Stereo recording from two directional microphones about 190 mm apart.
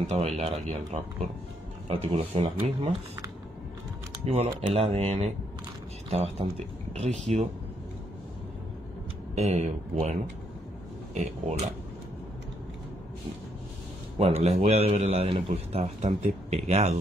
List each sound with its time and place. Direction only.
0.0 s a man's voice: 35° right (ahead or behind)
4.3 s a man's voice: 30° right (ahead or behind)
9.3 s a man's voice: 35° right (ahead or behind)
11.1 s a man's voice: 35° right (ahead or behind)
14.1 s a man's voice: 35° right (ahead or behind)